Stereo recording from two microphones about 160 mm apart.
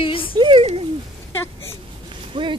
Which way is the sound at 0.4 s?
35° right (ahead or behind).